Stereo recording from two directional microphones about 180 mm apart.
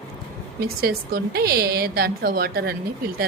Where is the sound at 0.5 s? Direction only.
60° right (ahead or behind).